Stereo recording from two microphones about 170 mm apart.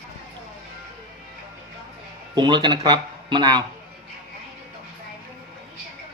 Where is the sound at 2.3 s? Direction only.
25° right (ahead or behind).